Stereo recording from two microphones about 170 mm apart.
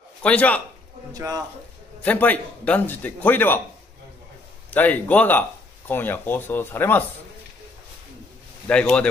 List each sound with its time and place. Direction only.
0.2 s a man's voice: 5° left (ahead or behind)
1.1 s a man's voice: 20° right (ahead or behind)
2.0 s a man's voice: 10° left (ahead or behind)
4.6 s a man's voice: 10° left (ahead or behind)
8.6 s a man's voice: 5° left (ahead or behind)